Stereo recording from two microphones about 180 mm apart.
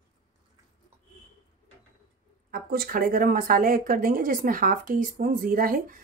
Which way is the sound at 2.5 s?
55° right (ahead or behind).